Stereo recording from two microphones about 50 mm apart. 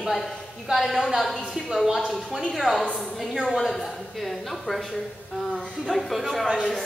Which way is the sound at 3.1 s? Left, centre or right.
Centre.